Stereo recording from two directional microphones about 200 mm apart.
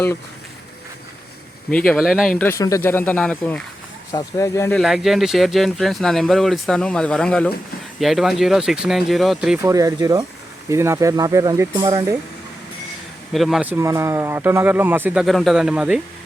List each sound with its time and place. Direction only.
1.9 s speech: centre (ahead or behind)
2.4 s speech: 15° left (ahead or behind)
4.1 s speech: 15° left (ahead or behind)
4.8 s speech: centre (ahead or behind)
9.6 s speech: 15° right (ahead or behind)
13.3 s speech: centre (ahead or behind)